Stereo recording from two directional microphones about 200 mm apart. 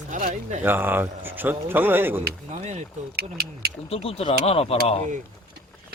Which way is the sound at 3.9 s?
30° left (ahead or behind).